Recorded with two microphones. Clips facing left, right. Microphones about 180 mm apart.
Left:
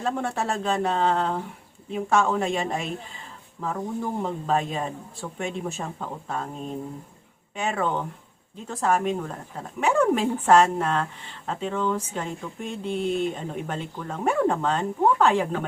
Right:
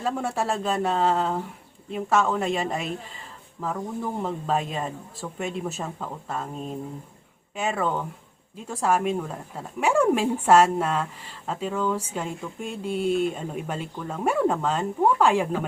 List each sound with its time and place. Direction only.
0.0 s speech: 5° right (ahead or behind)